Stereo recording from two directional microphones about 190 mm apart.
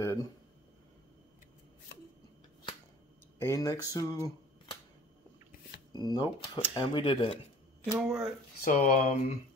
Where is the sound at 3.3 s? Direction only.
15° left (ahead or behind).